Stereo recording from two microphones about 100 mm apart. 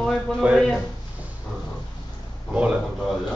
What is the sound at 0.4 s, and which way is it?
Speech, 15° right (ahead or behind).